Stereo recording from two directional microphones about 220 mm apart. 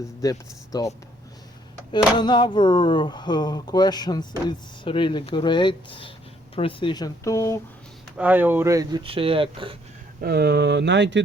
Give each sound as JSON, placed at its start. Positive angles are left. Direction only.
{"t": 0.2, "sound": "speech", "side_deg": 15}
{"t": 2.1, "sound": "speech", "side_deg": 20}
{"t": 8.2, "sound": "speech", "side_deg": -10}
{"t": 10.2, "sound": "speech", "side_deg": -45}